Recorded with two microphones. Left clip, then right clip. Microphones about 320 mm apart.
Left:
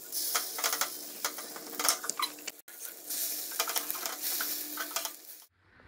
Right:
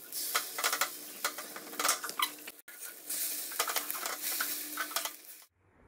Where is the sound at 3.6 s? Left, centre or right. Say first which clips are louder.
Even; centre.